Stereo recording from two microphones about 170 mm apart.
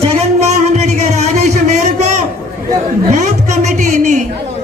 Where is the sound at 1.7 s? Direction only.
45° right (ahead or behind).